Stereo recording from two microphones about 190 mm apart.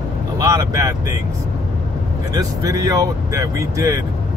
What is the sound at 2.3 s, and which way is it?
Speech, 20° right (ahead or behind).